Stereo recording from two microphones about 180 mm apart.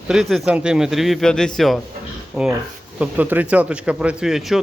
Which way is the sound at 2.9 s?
10° right (ahead or behind).